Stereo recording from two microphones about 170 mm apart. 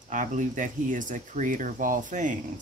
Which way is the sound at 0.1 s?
50° right (ahead or behind).